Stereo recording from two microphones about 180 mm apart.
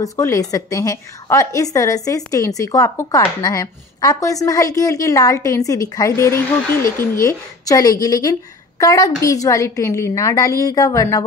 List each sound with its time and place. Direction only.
0.0 s a woman's voice: 20° left (ahead or behind)